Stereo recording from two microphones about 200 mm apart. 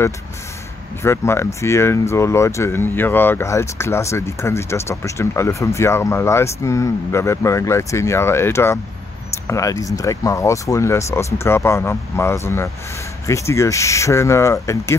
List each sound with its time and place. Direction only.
1.0 s speech: 15° left (ahead or behind)